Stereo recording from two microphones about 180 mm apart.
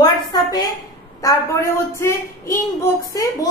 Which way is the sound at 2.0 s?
15° left (ahead or behind).